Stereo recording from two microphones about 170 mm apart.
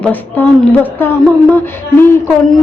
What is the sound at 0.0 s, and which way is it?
A woman's voice, 10° left (ahead or behind).